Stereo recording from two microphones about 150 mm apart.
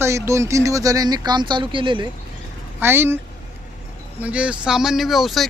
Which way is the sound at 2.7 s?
15° right (ahead or behind).